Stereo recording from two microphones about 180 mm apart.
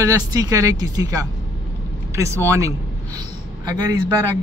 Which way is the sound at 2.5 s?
20° right (ahead or behind).